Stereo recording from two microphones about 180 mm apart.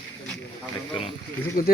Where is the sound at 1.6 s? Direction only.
50° left (ahead or behind).